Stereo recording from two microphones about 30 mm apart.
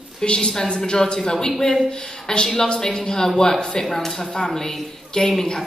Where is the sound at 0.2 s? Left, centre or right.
Left; by 4.5 s centre.